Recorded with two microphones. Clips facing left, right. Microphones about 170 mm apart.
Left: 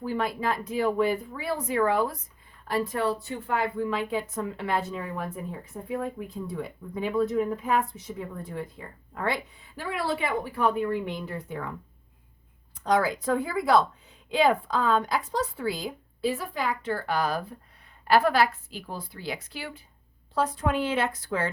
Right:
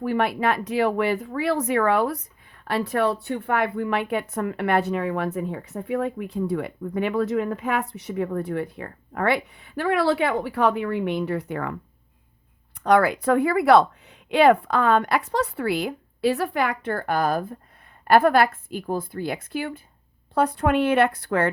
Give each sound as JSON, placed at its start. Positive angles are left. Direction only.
{"t": 0.0, "sound": "a woman's voice", "side_deg": -70}
{"t": 12.8, "sound": "a woman's voice", "side_deg": -65}
{"t": 20.3, "sound": "a woman's voice", "side_deg": -60}